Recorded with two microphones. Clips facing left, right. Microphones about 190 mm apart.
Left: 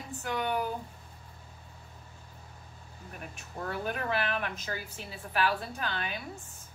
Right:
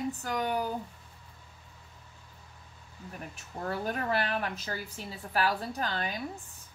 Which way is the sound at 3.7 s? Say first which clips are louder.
Right 2 dB; 35° right (ahead or behind).